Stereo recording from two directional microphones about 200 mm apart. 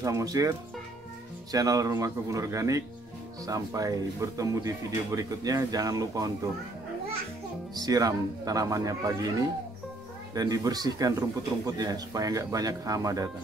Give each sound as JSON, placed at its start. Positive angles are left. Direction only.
{"t": 0.0, "sound": "speech", "side_deg": -15}
{"t": 7.7, "sound": "speech", "side_deg": -20}